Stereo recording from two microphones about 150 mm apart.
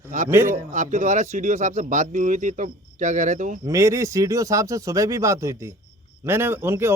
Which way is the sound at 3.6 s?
20° right (ahead or behind).